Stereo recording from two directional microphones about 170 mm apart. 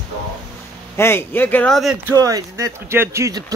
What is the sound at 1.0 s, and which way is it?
Speech, 15° left (ahead or behind).